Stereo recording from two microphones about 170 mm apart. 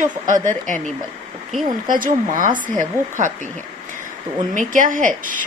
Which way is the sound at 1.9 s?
50° right (ahead or behind).